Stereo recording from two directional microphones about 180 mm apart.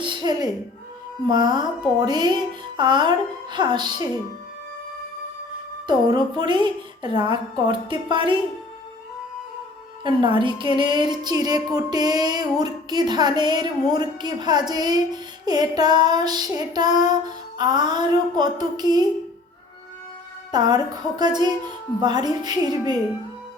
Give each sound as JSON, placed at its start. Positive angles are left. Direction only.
{"t": 0.0, "sound": "a sound", "side_deg": -25}
{"t": 1.3, "sound": "music", "side_deg": -25}
{"t": 6.1, "sound": "music", "side_deg": -25}
{"t": 10.0, "sound": "music", "side_deg": -25}
{"t": 20.5, "sound": "music", "side_deg": -25}